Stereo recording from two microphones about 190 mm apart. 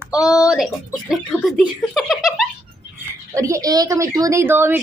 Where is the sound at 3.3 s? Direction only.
15° right (ahead or behind).